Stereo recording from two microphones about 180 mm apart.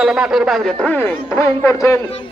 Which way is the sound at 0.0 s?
5° right (ahead or behind).